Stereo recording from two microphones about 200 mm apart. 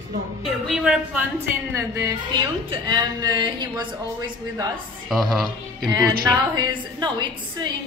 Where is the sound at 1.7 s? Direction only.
15° right (ahead or behind).